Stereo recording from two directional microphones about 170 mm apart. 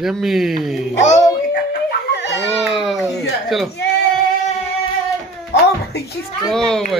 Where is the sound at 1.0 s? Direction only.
60° left (ahead or behind).